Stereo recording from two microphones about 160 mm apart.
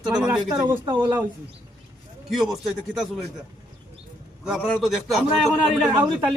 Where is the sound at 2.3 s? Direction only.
Centre (ahead or behind).